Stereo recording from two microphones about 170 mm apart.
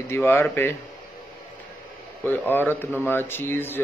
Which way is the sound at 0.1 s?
15° left (ahead or behind).